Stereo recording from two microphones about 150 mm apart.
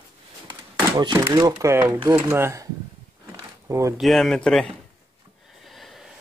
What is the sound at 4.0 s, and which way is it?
Speech, centre (ahead or behind).